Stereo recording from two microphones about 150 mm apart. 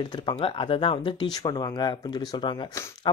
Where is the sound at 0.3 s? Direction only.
35° left (ahead or behind).